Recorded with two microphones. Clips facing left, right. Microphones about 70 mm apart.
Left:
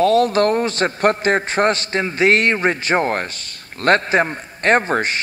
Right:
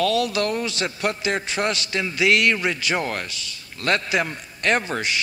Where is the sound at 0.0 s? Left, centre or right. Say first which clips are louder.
Left 7 dB; left.